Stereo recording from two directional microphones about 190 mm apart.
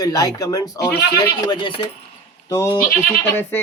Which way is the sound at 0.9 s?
60° left (ahead or behind).